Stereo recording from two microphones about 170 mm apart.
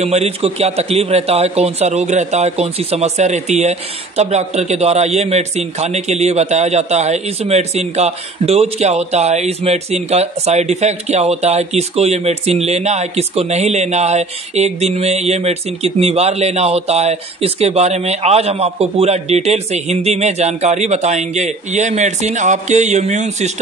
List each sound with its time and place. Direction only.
0.0 s a man's voice: 40° right (ahead or behind)